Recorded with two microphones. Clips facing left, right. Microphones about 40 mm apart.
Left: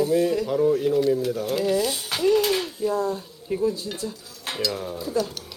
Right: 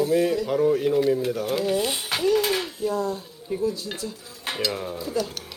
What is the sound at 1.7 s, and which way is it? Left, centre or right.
Speech, right.